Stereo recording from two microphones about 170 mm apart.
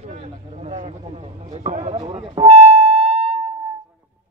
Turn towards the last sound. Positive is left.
turn(degrees=-35)  # may be behind; listen again after turning